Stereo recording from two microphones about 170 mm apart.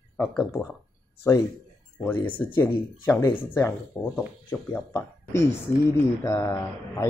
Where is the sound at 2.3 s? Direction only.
10° left (ahead or behind).